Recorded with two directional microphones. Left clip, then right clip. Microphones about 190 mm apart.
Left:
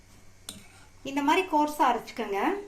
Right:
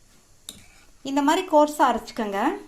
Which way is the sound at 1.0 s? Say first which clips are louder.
Right 3 dB; 40° right (ahead or behind).